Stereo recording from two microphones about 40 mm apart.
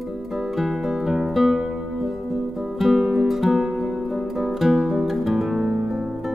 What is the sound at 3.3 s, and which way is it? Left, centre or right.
Music, centre.